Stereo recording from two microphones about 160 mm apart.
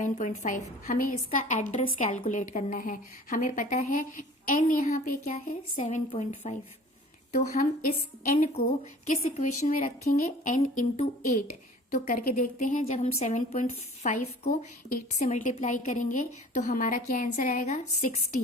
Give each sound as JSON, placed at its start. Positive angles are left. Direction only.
{"t": 0.0, "sound": "a woman's voice", "side_deg": 50}
{"t": 6.1, "sound": "speech", "side_deg": 40}
{"t": 7.4, "sound": "a woman's voice", "side_deg": 50}